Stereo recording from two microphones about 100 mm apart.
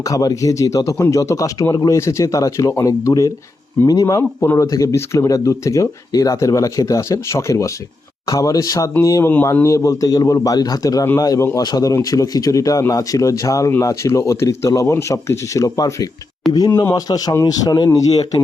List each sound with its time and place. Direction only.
0.0 s speech: 35° left (ahead or behind)